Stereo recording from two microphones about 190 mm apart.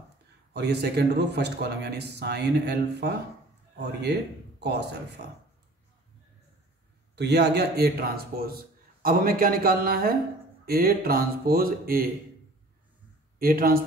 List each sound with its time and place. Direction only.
0.5 s a man's voice: 60° right (ahead or behind)
7.2 s a man's voice: 60° right (ahead or behind)
13.4 s a man's voice: 50° right (ahead or behind)